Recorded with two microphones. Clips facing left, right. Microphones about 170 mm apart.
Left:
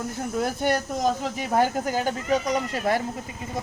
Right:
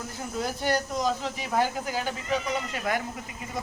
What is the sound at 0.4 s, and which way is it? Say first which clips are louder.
Speech: left 2 dB; 55° left (ahead or behind).